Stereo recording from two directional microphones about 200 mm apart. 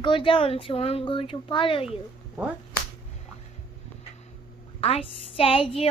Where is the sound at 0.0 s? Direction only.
25° left (ahead or behind).